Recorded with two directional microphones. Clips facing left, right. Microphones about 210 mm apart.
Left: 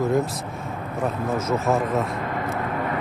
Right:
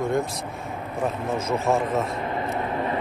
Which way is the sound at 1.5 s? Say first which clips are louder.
Even; centre (ahead or behind).